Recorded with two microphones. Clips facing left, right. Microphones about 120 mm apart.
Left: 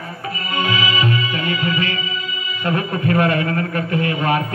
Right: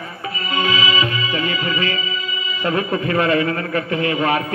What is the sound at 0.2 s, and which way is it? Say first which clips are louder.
Music: right 1 dB; 50° left (ahead or behind).